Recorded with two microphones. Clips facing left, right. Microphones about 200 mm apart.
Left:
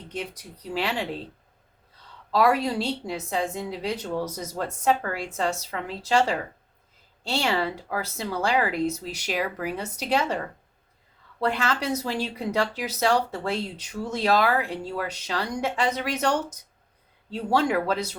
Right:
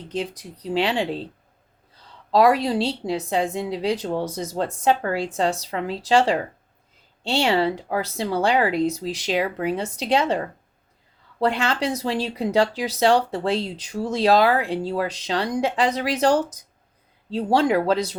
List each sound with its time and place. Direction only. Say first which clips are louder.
0.2 s speech: right 6 dB; 30° right (ahead or behind)
2.3 s speech: right 4 dB; 30° right (ahead or behind)